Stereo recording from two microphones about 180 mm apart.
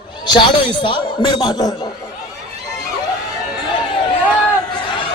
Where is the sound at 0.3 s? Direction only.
25° left (ahead or behind).